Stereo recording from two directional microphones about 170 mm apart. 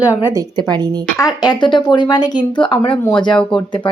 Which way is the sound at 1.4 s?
25° left (ahead or behind).